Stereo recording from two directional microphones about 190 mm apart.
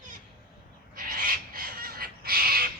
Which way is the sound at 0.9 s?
50° right (ahead or behind).